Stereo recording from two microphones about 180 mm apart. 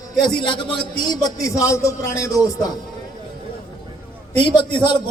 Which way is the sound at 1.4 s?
15° left (ahead or behind).